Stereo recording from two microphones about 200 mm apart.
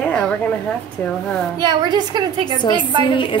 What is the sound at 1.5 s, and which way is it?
A child's voice, 20° right (ahead or behind).